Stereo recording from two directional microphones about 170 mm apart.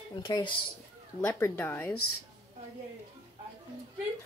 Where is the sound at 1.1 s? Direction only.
15° left (ahead or behind).